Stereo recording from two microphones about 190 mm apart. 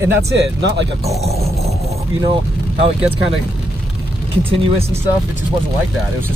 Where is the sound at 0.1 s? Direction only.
65° right (ahead or behind).